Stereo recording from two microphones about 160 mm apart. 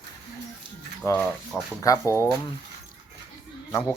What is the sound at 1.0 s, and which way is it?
Speech, 15° left (ahead or behind).